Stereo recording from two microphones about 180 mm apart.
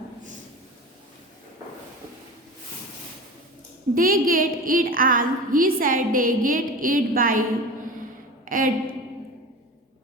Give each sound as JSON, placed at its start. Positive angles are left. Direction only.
{"t": 3.9, "sound": "a woman's voice", "side_deg": -50}
{"t": 8.4, "sound": "a woman's voice", "side_deg": -50}